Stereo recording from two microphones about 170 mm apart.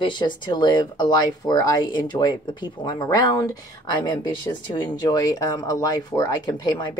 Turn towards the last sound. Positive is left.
turn(degrees=25)  # may be behind; listen again after turning